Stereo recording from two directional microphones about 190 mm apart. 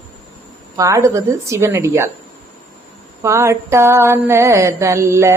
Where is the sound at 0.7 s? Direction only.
15° right (ahead or behind).